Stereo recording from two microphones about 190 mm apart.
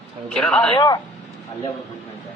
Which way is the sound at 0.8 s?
20° left (ahead or behind).